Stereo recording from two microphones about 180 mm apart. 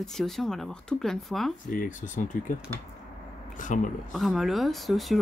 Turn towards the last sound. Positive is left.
turn(degrees=0)  # may be behind; listen again after turning